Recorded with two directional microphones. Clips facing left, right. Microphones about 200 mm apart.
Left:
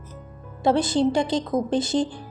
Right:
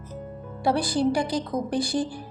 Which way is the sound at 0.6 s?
25° left (ahead or behind).